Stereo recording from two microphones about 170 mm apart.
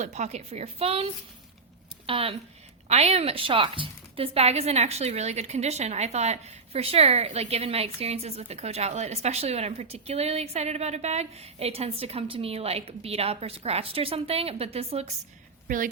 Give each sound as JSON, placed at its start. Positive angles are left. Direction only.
{"t": 0.0, "sound": "a woman's voice", "side_deg": -40}
{"t": 15.6, "sound": "a woman's voice", "side_deg": -55}